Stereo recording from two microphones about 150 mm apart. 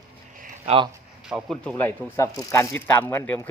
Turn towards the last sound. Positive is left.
turn(degrees=15)  # may be behind; listen again after turning